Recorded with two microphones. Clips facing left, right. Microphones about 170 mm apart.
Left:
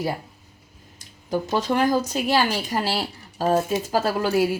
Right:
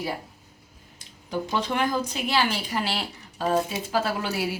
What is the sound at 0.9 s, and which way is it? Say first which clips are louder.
Speech: left 4 dB; 45° left (ahead or behind).